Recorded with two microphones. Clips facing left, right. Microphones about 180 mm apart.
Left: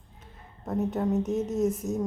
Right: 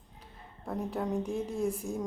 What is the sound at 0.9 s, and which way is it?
Speech, 5° left (ahead or behind).